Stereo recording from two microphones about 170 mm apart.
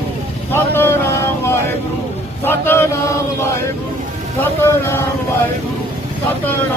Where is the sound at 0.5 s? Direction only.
15° left (ahead or behind).